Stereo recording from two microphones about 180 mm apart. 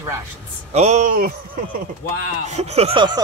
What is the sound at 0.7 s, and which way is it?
Speech, 40° right (ahead or behind).